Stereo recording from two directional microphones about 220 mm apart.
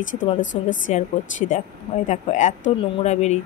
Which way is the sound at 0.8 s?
35° left (ahead or behind).